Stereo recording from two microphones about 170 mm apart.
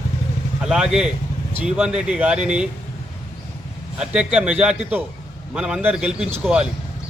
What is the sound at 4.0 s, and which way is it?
A man's voice, 5° right (ahead or behind).